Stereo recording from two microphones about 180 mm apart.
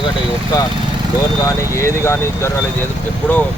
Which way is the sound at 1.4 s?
15° left (ahead or behind).